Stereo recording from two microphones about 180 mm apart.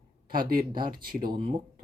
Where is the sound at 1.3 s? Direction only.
30° right (ahead or behind).